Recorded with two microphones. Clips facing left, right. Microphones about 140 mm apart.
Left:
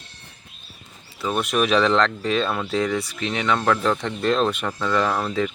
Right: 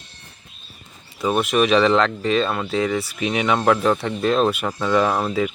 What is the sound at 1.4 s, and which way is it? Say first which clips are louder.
Speech: right 3 dB; centre (ahead or behind).